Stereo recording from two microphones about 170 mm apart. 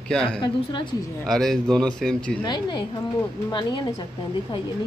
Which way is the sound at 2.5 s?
25° left (ahead or behind).